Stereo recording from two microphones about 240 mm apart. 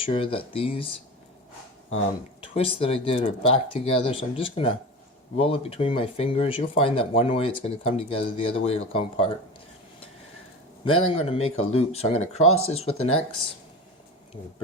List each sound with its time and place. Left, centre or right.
0.0 s speech: left
2.4 s speech: left
10.8 s speech: left
12.4 s speech: left
12.6 s speech: left